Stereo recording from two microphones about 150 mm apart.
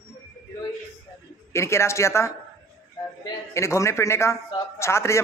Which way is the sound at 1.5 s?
20° left (ahead or behind).